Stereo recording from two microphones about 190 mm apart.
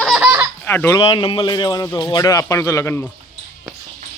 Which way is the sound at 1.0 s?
25° left (ahead or behind).